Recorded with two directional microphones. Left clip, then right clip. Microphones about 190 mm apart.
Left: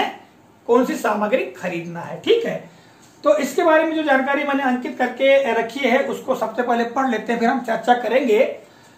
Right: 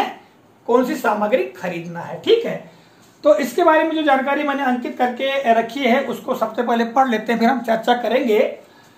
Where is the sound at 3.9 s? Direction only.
40° right (ahead or behind).